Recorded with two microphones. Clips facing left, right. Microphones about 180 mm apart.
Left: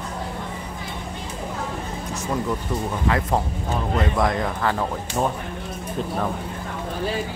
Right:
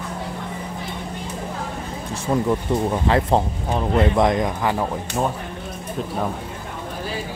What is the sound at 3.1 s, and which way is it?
Speech, 30° right (ahead or behind).